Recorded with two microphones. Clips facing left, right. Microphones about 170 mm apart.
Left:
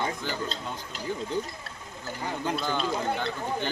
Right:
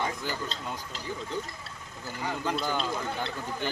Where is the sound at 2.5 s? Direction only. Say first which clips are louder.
Left 2 dB; centre (ahead or behind).